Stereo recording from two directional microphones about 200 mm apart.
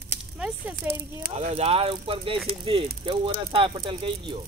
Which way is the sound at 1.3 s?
30° right (ahead or behind).